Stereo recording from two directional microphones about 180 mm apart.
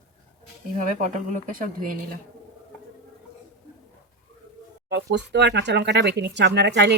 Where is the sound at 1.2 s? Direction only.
50° right (ahead or behind).